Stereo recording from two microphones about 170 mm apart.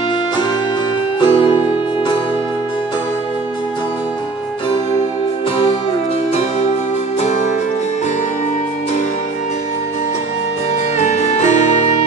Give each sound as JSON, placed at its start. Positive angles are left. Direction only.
{"t": 1.2, "sound": "music", "side_deg": 30}
{"t": 7.2, "sound": "music", "side_deg": 40}
{"t": 11.0, "sound": "music", "side_deg": 40}